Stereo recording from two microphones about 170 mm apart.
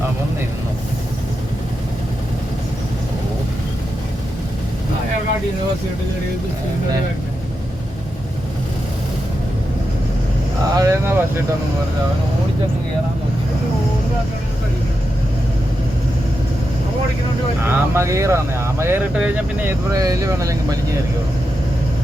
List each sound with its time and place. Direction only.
10.8 s speech: 15° right (ahead or behind)
17.6 s speech: 15° right (ahead or behind)
19.9 s speech: 20° right (ahead or behind)